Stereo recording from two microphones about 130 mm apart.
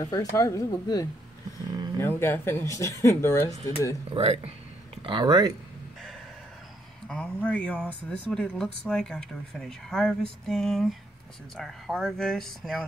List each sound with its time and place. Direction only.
0.0 s speech: 30° left (ahead or behind)
4.1 s speech: 50° right (ahead or behind)
5.0 s speech: 35° right (ahead or behind)
7.1 s speech: 10° left (ahead or behind)